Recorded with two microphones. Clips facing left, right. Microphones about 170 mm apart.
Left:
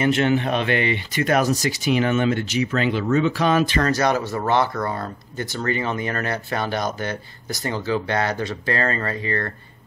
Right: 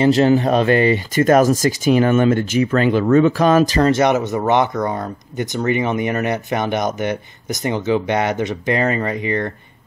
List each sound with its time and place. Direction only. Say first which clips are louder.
0.0 s speech: right 6 dB; 35° right (ahead or behind)
3.8 s speech: right 5 dB; 20° right (ahead or behind)